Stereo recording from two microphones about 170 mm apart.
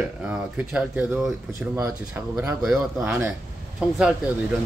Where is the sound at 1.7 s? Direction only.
15° right (ahead or behind).